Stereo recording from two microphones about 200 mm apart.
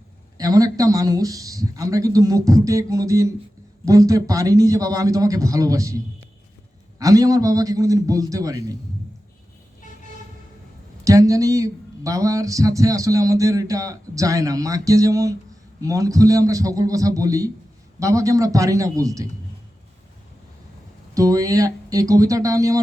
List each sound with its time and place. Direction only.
0.3 s speech: 20° right (ahead or behind)
7.0 s speech: 15° right (ahead or behind)
11.0 s speech: 15° right (ahead or behind)
21.2 s speech: 15° right (ahead or behind)